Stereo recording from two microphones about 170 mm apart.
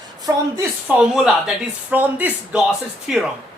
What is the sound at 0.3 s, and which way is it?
A woman's voice, 15° right (ahead or behind).